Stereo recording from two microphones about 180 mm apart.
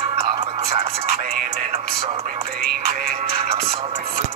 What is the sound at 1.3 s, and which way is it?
Music, 50° right (ahead or behind).